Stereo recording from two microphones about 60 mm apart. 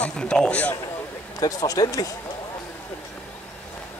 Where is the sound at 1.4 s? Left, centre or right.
Left.